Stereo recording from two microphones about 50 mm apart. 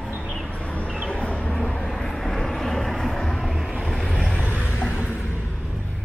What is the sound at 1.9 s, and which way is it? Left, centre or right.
Vehicle, centre.